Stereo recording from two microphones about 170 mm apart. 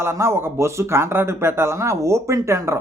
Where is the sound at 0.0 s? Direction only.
15° right (ahead or behind).